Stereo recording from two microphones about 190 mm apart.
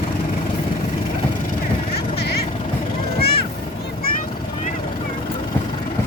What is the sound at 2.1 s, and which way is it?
Vehicle, 55° left (ahead or behind).